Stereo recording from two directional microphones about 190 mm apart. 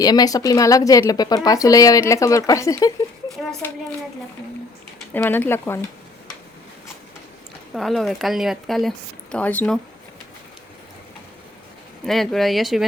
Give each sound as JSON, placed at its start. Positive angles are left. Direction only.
{"t": 0.0, "sound": "speech", "side_deg": 20}
{"t": 5.1, "sound": "speech", "side_deg": 10}
{"t": 7.7, "sound": "speech", "side_deg": 0}
{"t": 12.0, "sound": "speech", "side_deg": 0}